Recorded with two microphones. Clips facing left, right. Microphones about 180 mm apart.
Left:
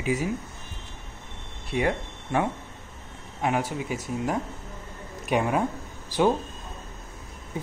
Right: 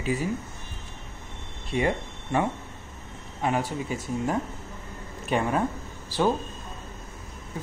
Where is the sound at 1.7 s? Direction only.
5° left (ahead or behind).